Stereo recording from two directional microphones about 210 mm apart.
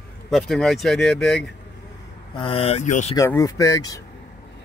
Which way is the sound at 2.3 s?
25° left (ahead or behind).